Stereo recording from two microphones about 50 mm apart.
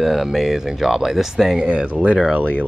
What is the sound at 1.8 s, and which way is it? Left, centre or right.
Speech, right.